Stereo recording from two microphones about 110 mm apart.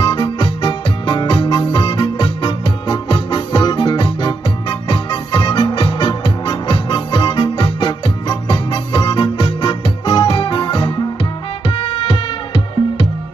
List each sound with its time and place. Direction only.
0.0 s music: 45° left (ahead or behind)